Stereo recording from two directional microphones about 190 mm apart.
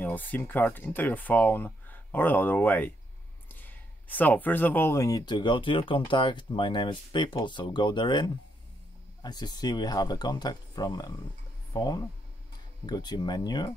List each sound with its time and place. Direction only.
0.0 s speech: 10° left (ahead or behind)